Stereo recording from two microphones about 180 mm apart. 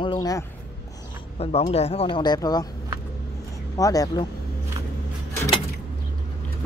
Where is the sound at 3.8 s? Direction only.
20° left (ahead or behind).